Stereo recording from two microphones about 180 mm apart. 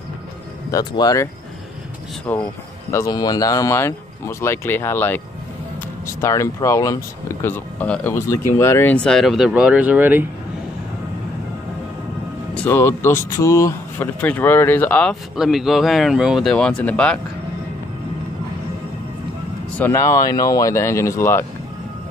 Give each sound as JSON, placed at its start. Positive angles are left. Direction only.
{"t": 0.7, "sound": "speech", "side_deg": 20}
{"t": 12.5, "sound": "speech", "side_deg": 15}
{"t": 19.8, "sound": "speech", "side_deg": 15}